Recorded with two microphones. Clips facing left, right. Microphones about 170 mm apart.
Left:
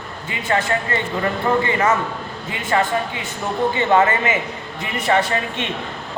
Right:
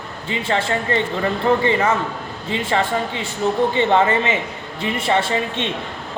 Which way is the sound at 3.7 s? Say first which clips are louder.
Even; 25° right (ahead or behind).